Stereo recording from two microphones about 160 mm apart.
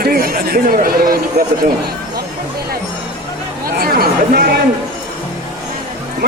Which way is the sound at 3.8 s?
70° right (ahead or behind).